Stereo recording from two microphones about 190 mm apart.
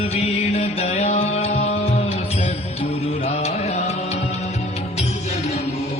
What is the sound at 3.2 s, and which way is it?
Mantra, 35° left (ahead or behind).